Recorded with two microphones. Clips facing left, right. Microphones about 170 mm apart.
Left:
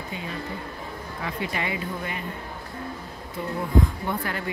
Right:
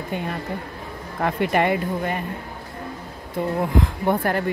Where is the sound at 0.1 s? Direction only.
55° right (ahead or behind).